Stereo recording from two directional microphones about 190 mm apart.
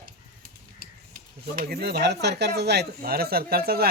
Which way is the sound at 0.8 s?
50° right (ahead or behind).